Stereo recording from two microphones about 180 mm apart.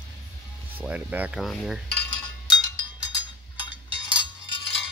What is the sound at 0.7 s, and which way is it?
Speech, 10° right (ahead or behind).